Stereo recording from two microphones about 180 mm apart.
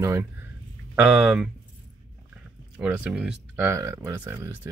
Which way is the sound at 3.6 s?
15° right (ahead or behind).